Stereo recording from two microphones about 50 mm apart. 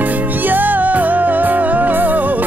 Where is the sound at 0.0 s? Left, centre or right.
Right.